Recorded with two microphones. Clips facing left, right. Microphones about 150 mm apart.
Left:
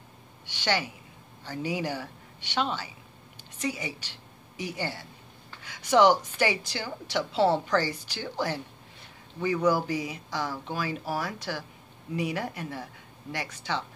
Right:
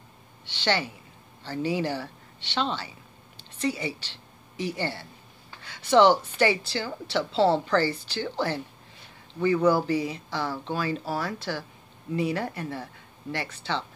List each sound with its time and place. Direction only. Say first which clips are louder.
0.5 s a woman's voice: right 2 dB; 10° left (ahead or behind)
9.7 s a woman's voice: right 3 dB; 10° left (ahead or behind)